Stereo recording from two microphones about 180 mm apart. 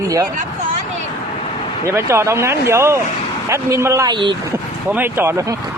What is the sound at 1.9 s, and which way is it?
Speech, 15° right (ahead or behind).